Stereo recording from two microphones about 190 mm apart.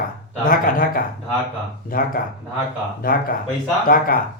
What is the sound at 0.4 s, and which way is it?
A man's voice, 50° left (ahead or behind).